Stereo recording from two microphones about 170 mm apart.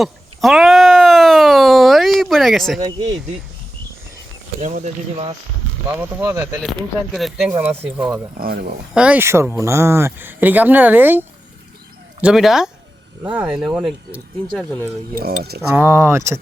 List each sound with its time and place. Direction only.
0.0 s a sound: centre (ahead or behind)
4.6 s speech: 45° right (ahead or behind)
6.0 s speech: 15° right (ahead or behind)
7.1 s speech: centre (ahead or behind)
8.4 s speech: 65° right (ahead or behind)
9.0 s speech: 10° right (ahead or behind)
12.2 s speech: centre (ahead or behind)
15.7 s speech: 15° right (ahead or behind)